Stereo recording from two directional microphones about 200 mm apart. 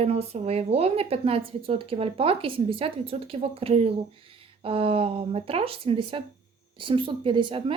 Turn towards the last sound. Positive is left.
turn(degrees=-25)  # may be behind; listen again after turning